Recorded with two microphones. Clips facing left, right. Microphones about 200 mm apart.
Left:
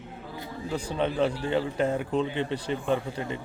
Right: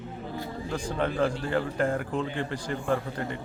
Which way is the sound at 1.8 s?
20° left (ahead or behind).